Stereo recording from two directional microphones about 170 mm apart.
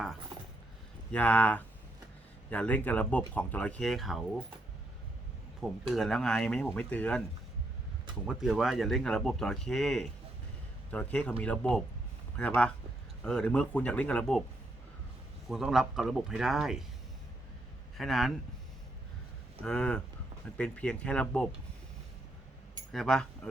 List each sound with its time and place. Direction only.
1.1 s speech: 10° left (ahead or behind)
5.9 s speech: centre (ahead or behind)
8.3 s speech: 5° right (ahead or behind)
15.4 s speech: centre (ahead or behind)
17.9 s a man's voice: centre (ahead or behind)
19.6 s speech: 5° left (ahead or behind)
22.9 s speech: 5° left (ahead or behind)